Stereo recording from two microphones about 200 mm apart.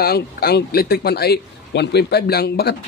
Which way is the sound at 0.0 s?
50° left (ahead or behind).